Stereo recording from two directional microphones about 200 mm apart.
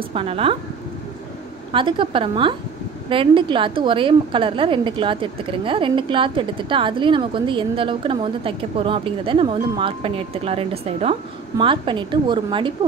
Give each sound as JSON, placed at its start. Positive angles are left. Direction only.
{"t": 0.1, "sound": "a woman's voice", "side_deg": -25}
{"t": 1.7, "sound": "a woman's voice", "side_deg": -25}